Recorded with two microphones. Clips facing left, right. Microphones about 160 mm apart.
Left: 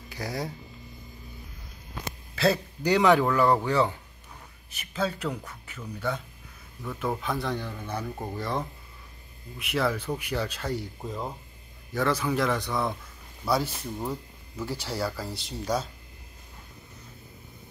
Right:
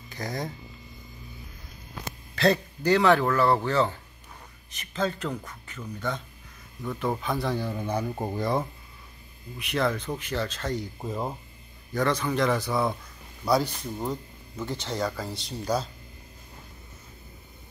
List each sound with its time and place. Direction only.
0.1 s speech: 10° left (ahead or behind)
2.3 s speech: 5° left (ahead or behind)
7.7 s speech: 20° right (ahead or behind)
9.6 s speech: 5° left (ahead or behind)
11.0 s speech: 15° right (ahead or behind)
11.9 s speech: 5° left (ahead or behind)